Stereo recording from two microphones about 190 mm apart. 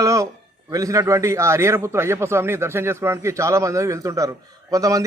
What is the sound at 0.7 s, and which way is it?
A man's voice, 15° right (ahead or behind).